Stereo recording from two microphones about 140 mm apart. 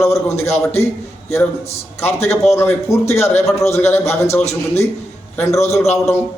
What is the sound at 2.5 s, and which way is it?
A man's voice, 20° left (ahead or behind).